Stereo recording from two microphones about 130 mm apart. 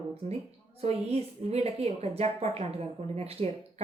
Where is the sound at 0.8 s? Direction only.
55° right (ahead or behind).